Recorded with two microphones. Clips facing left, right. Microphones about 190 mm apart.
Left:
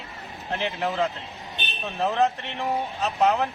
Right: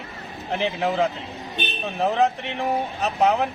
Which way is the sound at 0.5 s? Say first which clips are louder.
Right 4 dB; 15° right (ahead or behind).